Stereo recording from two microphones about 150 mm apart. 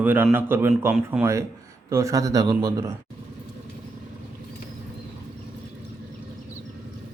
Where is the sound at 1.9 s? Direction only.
20° right (ahead or behind).